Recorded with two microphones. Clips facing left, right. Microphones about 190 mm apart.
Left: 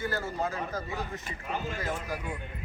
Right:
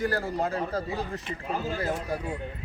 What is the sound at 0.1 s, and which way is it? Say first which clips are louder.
Speech: right 4 dB; 35° right (ahead or behind).